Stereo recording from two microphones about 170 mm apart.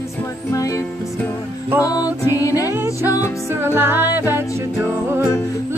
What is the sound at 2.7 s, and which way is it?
Music, 10° right (ahead or behind).